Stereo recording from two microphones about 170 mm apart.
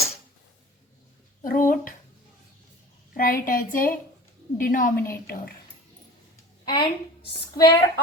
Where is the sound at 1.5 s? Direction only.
55° left (ahead or behind).